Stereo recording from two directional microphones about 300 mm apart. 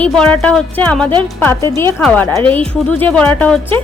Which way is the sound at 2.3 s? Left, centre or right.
Centre.